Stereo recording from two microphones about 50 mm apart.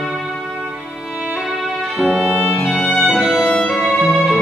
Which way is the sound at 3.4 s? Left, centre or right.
Centre.